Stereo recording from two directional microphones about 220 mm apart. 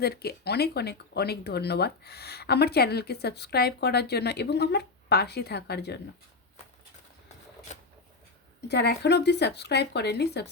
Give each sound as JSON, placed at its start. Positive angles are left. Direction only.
{"t": 0.0, "sound": "speech", "side_deg": 45}
{"t": 7.7, "sound": "a sound", "side_deg": 30}
{"t": 8.6, "sound": "speech", "side_deg": 50}